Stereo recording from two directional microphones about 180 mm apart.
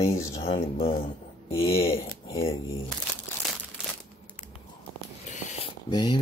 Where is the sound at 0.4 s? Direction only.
30° left (ahead or behind).